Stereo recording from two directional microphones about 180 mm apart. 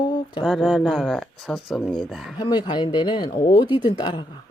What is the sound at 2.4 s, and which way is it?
Speech, 25° left (ahead or behind).